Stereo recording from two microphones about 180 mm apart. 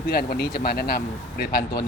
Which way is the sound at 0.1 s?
60° left (ahead or behind).